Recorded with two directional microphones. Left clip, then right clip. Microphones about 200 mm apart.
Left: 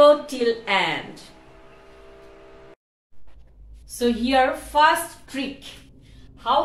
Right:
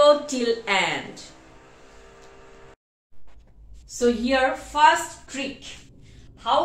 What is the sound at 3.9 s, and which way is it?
Speech, 60° left (ahead or behind).